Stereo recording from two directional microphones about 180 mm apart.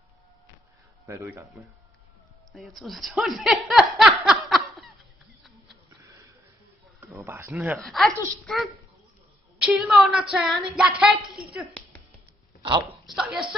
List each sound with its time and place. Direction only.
1.0 s a man's voice: 15° right (ahead or behind)
2.5 s speech: centre (ahead or behind)
4.5 s laughter: centre (ahead or behind)
7.0 s speech: 10° right (ahead or behind)
9.6 s speech: 5° right (ahead or behind)
12.6 s speech: 30° right (ahead or behind)
13.0 s speech: centre (ahead or behind)